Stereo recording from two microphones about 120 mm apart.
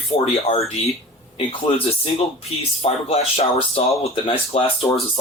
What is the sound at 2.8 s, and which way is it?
Speech, 60° left (ahead or behind).